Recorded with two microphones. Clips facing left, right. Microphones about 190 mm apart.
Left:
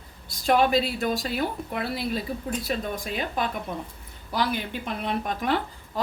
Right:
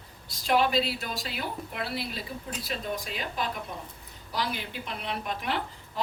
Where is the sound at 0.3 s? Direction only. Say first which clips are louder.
Left 4 dB; 50° left (ahead or behind).